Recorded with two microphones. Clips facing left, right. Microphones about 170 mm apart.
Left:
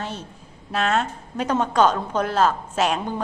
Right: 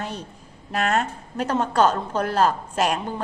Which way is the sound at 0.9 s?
5° right (ahead or behind).